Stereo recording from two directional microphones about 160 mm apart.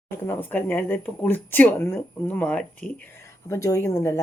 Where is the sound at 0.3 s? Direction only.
15° left (ahead or behind).